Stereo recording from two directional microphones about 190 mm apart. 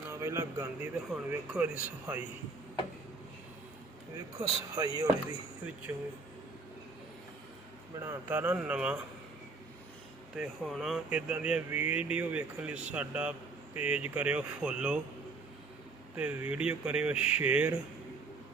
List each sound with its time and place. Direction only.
0.1 s speech: 15° right (ahead or behind)
4.8 s speech: 20° right (ahead or behind)
7.9 s speech: 15° right (ahead or behind)
10.3 s speech: 5° right (ahead or behind)
16.1 s speech: 10° right (ahead or behind)